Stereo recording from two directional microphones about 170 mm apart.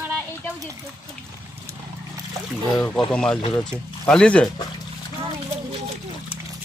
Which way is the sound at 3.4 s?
25° left (ahead or behind).